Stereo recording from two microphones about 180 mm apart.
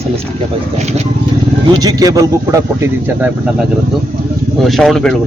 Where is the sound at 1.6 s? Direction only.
20° right (ahead or behind).